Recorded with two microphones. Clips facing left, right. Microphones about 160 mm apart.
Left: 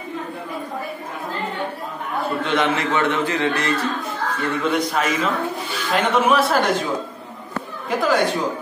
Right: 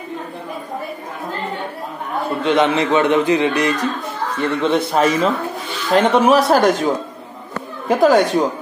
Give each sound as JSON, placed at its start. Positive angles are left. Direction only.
{"t": 2.2, "sound": "a man's voice", "side_deg": -20}
{"t": 4.4, "sound": "a man's voice", "side_deg": -25}
{"t": 7.9, "sound": "speech", "side_deg": -40}